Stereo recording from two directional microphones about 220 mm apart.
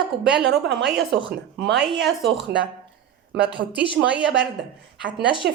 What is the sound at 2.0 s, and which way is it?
A woman's voice, 55° right (ahead or behind).